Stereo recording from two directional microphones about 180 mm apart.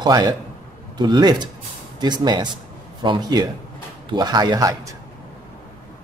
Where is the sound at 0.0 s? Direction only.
20° right (ahead or behind).